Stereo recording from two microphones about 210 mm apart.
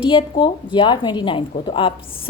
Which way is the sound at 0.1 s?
25° left (ahead or behind).